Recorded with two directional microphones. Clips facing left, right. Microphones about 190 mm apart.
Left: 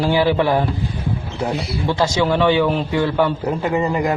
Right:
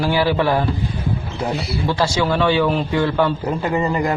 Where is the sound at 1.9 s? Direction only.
20° left (ahead or behind).